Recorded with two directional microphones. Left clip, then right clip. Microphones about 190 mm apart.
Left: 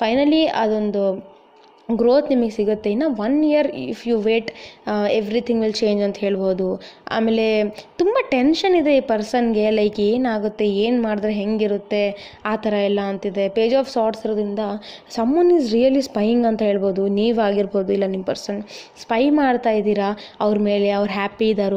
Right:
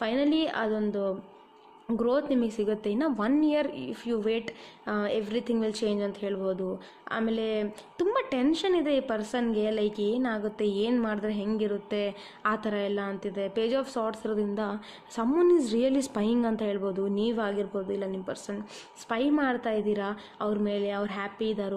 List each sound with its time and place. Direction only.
0.0 s a woman's voice: 20° left (ahead or behind)